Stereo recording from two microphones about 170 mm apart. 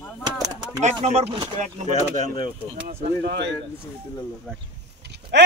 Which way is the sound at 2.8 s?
65° right (ahead or behind).